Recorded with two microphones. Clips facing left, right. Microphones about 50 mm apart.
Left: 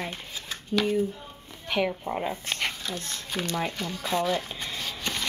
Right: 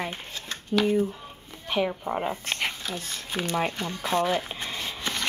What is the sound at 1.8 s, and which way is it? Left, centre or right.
Speech, centre.